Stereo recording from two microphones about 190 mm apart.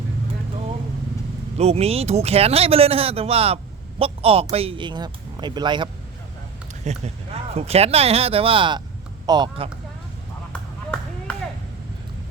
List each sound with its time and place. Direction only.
1.5 s speech: 35° right (ahead or behind)
6.8 s speech: 35° right (ahead or behind)